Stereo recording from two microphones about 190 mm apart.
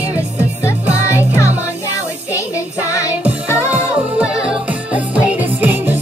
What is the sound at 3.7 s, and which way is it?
Music, 5° right (ahead or behind).